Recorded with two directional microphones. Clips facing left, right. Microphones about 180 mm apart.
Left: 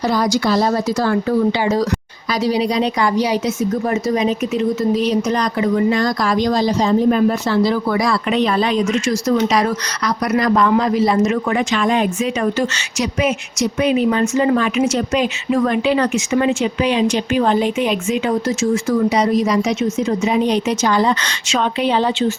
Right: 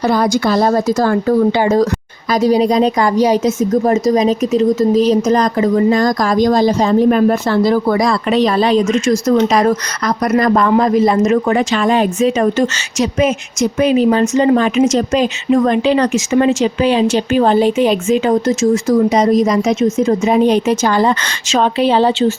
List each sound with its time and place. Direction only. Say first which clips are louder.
0.0 s speech: right 3 dB; 55° right (ahead or behind)
13.9 s speech: right 4 dB; 30° right (ahead or behind)